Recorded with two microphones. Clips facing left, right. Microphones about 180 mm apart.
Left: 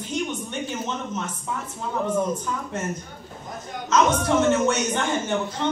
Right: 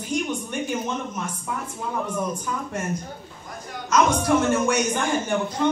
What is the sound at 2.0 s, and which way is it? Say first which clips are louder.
Speech: left 7 dB; 25° left (ahead or behind).